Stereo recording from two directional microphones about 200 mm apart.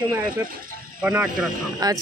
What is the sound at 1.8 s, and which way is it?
Speech, 20° right (ahead or behind).